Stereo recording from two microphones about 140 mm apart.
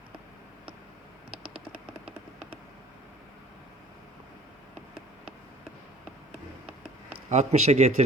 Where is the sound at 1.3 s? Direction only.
40° right (ahead or behind).